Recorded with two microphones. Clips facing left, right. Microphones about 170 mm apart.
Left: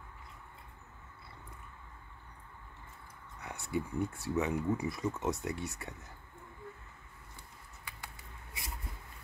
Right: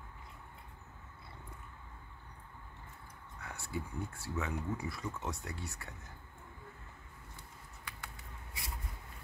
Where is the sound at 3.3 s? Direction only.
20° left (ahead or behind).